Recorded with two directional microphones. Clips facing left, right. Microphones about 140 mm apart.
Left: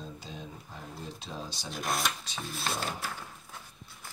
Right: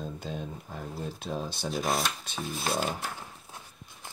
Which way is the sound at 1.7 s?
Centre (ahead or behind).